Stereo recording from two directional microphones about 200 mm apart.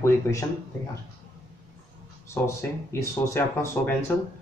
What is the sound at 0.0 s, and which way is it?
Speech, 15° left (ahead or behind).